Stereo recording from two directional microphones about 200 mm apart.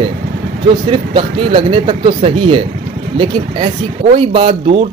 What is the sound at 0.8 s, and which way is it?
Speech, 25° right (ahead or behind).